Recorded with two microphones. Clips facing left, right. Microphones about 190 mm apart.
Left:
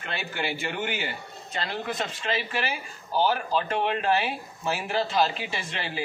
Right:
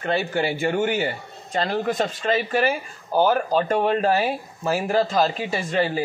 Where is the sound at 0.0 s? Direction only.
45° right (ahead or behind).